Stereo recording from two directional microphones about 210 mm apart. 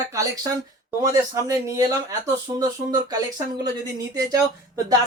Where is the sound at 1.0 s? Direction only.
15° right (ahead or behind).